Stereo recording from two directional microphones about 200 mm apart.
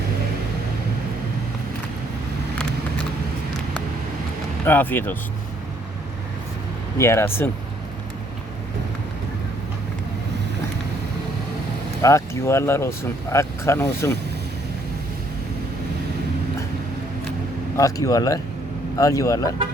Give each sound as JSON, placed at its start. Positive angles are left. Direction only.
{"t": 4.6, "sound": "speech", "side_deg": 10}
{"t": 7.0, "sound": "speech", "side_deg": 15}
{"t": 12.0, "sound": "speech", "side_deg": 15}
{"t": 17.7, "sound": "speech", "side_deg": 15}